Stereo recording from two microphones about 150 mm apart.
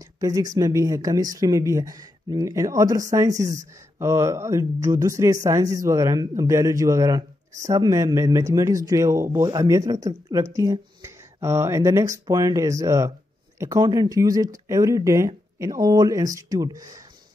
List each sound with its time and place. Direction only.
0.2 s speech: 25° right (ahead or behind)